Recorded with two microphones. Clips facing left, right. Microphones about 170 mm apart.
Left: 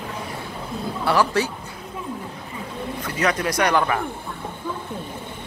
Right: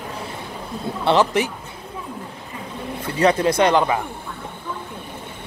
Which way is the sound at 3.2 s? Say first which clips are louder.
Right 5 dB; 30° right (ahead or behind).